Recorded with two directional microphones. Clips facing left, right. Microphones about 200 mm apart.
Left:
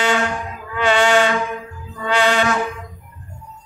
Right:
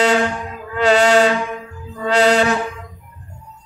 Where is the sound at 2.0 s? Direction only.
40° right (ahead or behind).